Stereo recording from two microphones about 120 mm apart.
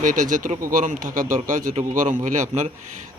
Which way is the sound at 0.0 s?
90° right.